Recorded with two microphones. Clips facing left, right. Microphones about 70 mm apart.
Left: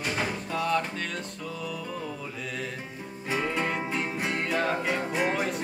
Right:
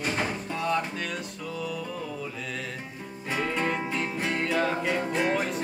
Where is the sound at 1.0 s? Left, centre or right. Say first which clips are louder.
Right 1 dB; centre.